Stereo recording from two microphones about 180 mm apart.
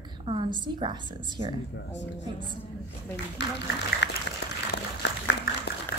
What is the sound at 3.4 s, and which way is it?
Speech, 80° left.